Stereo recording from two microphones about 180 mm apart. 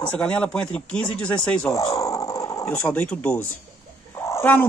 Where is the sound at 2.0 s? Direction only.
20° left (ahead or behind).